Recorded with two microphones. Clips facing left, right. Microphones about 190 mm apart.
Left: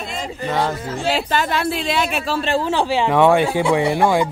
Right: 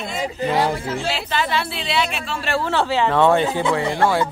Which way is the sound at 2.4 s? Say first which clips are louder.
Even; 15° left (ahead or behind).